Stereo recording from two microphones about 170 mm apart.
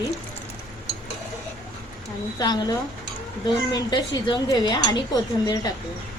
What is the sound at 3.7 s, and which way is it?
A woman's voice, 25° left (ahead or behind).